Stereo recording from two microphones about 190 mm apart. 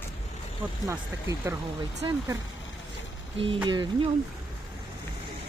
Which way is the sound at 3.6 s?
25° right (ahead or behind).